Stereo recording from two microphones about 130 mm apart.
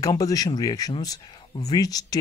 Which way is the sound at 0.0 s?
25° left (ahead or behind).